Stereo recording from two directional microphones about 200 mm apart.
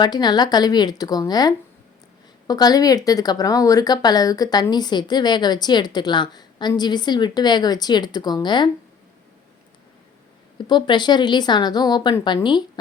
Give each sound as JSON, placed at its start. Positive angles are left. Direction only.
{"t": 0.0, "sound": "speech", "side_deg": 20}
{"t": 10.7, "sound": "speech", "side_deg": 20}